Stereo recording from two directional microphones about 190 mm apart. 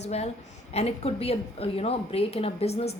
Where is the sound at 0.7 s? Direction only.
35° left (ahead or behind).